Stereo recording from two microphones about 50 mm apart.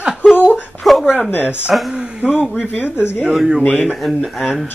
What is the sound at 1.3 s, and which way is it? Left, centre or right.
Speech, left.